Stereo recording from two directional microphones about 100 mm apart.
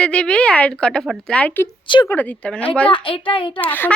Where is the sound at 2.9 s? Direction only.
60° left (ahead or behind).